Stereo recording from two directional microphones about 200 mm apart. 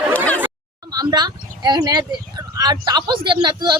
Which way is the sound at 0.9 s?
20° right (ahead or behind).